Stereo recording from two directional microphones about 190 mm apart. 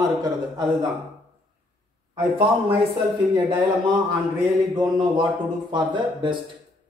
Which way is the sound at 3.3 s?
25° right (ahead or behind).